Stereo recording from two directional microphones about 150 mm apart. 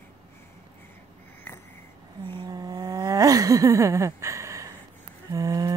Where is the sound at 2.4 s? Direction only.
25° right (ahead or behind).